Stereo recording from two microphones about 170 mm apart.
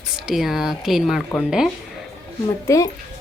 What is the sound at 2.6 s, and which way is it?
Speech, 20° left (ahead or behind).